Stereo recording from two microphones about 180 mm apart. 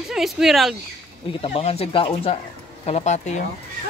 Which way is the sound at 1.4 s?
35° left (ahead or behind).